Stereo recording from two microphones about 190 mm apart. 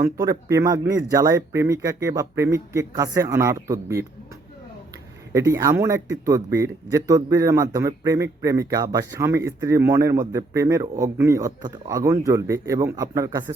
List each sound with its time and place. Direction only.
0.0 s a man's voice: 15° right (ahead or behind)
5.3 s a man's voice: 15° right (ahead or behind)